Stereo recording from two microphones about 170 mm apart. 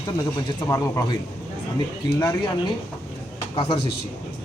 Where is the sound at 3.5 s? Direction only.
30° left (ahead or behind).